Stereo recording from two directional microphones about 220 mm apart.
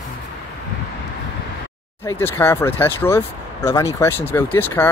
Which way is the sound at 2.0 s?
10° left (ahead or behind).